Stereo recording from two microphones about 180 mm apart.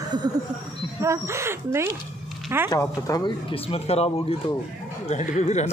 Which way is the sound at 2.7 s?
20° left (ahead or behind).